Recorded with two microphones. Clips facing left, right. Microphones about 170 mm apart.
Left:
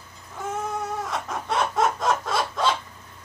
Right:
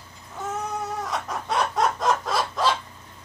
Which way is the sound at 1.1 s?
Centre (ahead or behind).